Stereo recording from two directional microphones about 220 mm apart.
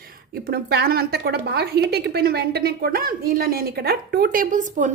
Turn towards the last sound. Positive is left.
turn(degrees=-35)  # may be behind; listen again after turning